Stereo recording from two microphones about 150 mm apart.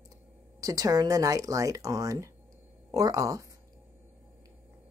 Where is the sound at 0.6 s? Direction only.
25° right (ahead or behind).